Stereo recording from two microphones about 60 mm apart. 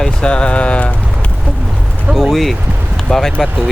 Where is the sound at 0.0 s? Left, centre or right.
Centre.